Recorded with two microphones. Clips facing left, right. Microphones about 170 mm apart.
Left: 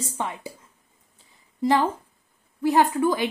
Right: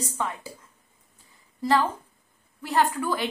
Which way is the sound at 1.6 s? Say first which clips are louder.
Left 2 dB; 20° left (ahead or behind).